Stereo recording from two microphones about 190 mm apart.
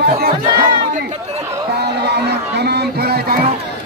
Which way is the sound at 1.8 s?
60° right (ahead or behind).